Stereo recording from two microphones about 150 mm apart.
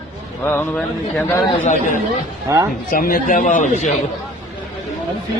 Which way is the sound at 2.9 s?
70° left (ahead or behind).